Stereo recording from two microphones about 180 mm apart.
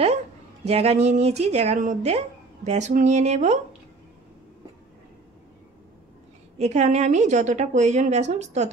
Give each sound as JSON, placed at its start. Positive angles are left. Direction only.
{"t": 0.7, "sound": "speech", "side_deg": -35}
{"t": 6.6, "sound": "speech", "side_deg": -40}